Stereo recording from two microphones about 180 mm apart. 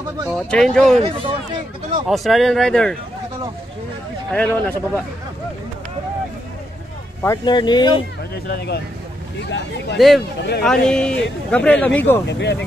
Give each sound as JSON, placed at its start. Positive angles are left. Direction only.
{"t": 0.3, "sound": "speech", "side_deg": 5}
{"t": 0.9, "sound": "speech", "side_deg": -35}
{"t": 2.0, "sound": "speech", "side_deg": 0}
{"t": 4.3, "sound": "speech", "side_deg": 10}
{"t": 7.2, "sound": "speech", "side_deg": 25}
{"t": 8.5, "sound": "speech", "side_deg": 65}
{"t": 9.9, "sound": "speech", "side_deg": 0}
{"t": 12.3, "sound": "speech", "side_deg": 70}